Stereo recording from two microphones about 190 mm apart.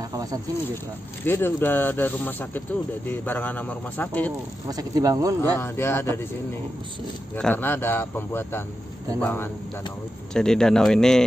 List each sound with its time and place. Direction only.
0.1 s snake: 20° right (ahead or behind)
1.2 s speech: 10° left (ahead or behind)
4.6 s speech: 20° right (ahead or behind)
5.6 s speech: 10° left (ahead or behind)
7.3 s a man's voice: 10° left (ahead or behind)